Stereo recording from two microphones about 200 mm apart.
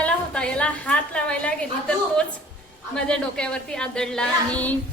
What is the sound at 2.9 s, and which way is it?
A woman's voice, 5° left (ahead or behind).